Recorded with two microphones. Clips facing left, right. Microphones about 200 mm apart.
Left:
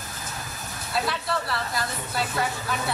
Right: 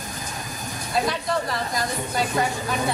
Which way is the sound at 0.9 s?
20° right (ahead or behind).